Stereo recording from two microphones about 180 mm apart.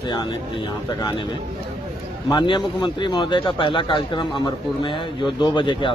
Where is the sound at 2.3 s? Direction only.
25° left (ahead or behind).